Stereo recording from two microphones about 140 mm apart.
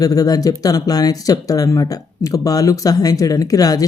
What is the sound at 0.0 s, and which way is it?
Speech, 25° left (ahead or behind).